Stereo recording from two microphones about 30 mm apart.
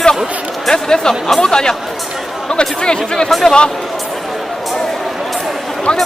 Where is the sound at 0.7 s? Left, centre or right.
Left.